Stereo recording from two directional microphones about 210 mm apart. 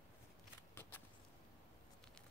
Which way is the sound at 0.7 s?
10° left (ahead or behind).